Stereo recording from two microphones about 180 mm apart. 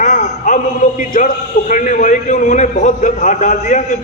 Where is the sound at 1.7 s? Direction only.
45° left (ahead or behind).